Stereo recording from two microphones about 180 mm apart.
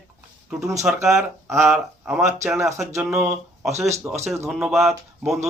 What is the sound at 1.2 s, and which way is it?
Speech, 15° right (ahead or behind).